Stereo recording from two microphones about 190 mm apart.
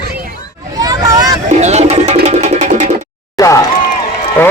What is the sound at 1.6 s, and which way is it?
Music, 35° right (ahead or behind).